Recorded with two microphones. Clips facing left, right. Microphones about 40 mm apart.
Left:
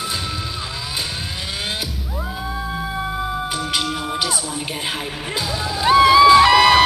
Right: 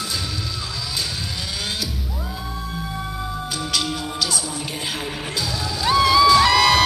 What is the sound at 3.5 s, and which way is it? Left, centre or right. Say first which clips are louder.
Music: left 2 dB; left.